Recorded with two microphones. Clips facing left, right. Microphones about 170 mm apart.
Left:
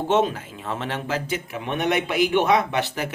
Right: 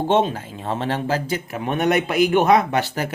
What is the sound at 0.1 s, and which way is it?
Speech, 30° right (ahead or behind).